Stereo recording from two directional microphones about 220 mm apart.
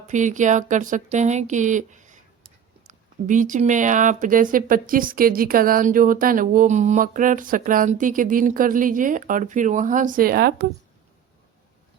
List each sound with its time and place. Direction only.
0.1 s speech: 35° right (ahead or behind)